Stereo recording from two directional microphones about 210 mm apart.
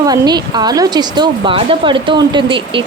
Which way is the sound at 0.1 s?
20° right (ahead or behind).